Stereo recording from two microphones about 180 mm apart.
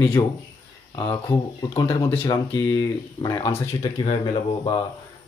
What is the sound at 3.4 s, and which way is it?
Speech, 30° left (ahead or behind).